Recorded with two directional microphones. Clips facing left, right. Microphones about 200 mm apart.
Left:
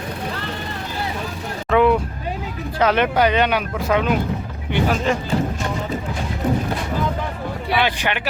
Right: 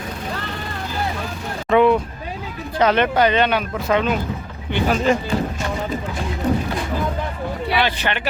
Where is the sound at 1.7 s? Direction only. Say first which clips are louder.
Right 1 dB; 5° left (ahead or behind).